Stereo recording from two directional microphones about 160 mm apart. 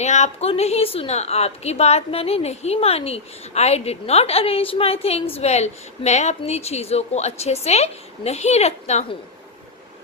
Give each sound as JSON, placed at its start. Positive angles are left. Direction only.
{"t": 0.0, "sound": "a woman's voice", "side_deg": 45}